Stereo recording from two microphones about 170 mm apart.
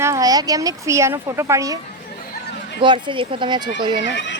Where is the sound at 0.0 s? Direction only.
20° right (ahead or behind).